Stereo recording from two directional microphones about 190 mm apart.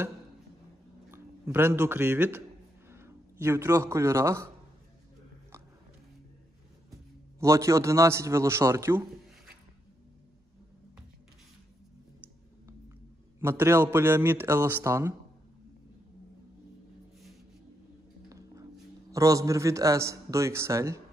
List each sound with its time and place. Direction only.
1.1 s a man's voice: 10° right (ahead or behind)
7.3 s a man's voice: 15° right (ahead or behind)
13.4 s a man's voice: 15° right (ahead or behind)
18.3 s a sound: 15° right (ahead or behind)
19.1 s a man's voice: 15° right (ahead or behind)